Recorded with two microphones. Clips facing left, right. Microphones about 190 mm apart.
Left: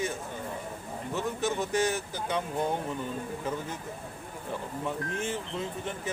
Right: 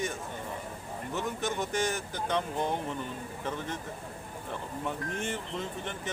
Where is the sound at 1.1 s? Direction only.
5° left (ahead or behind).